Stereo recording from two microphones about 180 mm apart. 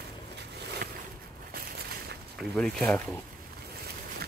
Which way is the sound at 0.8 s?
55° right (ahead or behind).